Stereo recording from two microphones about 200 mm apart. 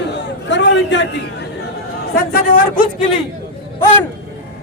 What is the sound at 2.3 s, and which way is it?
Speech, 45° left (ahead or behind).